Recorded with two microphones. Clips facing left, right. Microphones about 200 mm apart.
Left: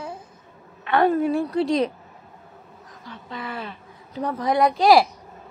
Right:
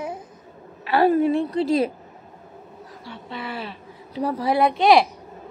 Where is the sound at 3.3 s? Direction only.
30° right (ahead or behind).